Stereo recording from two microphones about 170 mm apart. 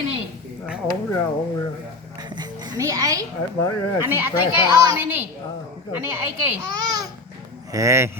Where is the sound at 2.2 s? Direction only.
25° right (ahead or behind).